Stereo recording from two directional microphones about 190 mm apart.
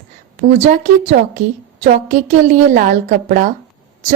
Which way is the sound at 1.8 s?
40° right (ahead or behind).